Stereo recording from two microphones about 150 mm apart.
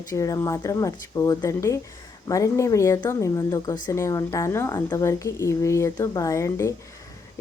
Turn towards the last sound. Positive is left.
turn(degrees=20)  # may be behind; listen again after turning